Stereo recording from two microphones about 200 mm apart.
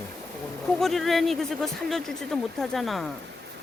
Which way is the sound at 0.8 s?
Centre (ahead or behind).